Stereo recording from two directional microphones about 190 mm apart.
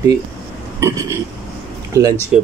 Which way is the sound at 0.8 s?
15° right (ahead or behind).